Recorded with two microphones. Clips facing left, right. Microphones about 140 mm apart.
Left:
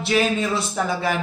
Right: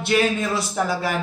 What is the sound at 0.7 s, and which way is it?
Speech, 5° right (ahead or behind).